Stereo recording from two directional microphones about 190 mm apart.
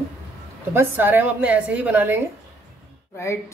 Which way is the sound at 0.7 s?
10° right (ahead or behind).